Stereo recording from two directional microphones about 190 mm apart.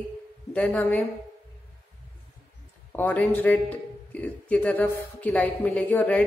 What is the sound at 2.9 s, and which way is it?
A woman's voice, 10° left (ahead or behind).